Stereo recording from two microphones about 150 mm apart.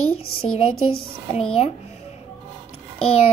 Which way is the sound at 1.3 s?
45° left (ahead or behind).